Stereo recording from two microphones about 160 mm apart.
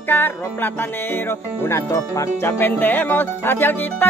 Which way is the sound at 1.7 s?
20° left (ahead or behind).